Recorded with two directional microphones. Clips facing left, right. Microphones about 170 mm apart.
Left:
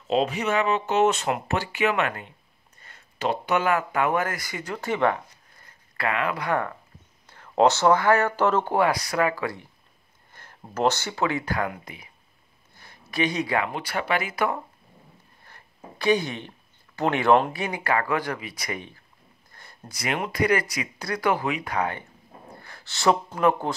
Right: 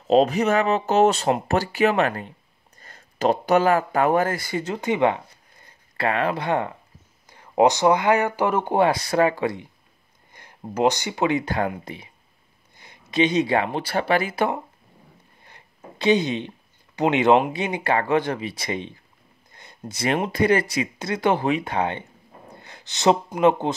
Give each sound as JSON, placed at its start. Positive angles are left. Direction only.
{"t": 0.0, "sound": "speech", "side_deg": -40}
{"t": 7.2, "sound": "speech", "side_deg": -15}